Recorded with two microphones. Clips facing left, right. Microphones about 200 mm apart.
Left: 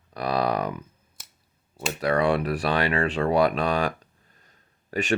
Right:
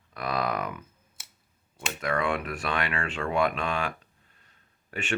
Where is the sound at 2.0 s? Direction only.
35° left (ahead or behind).